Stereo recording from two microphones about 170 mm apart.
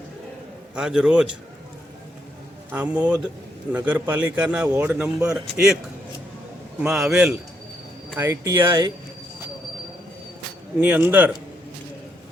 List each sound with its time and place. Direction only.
0.8 s a man's voice: 5° right (ahead or behind)
2.7 s a man's voice: 10° right (ahead or behind)
6.7 s a man's voice: 5° right (ahead or behind)
10.8 s a man's voice: 10° right (ahead or behind)